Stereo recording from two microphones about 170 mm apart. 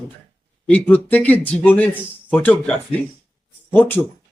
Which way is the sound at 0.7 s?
10° left (ahead or behind).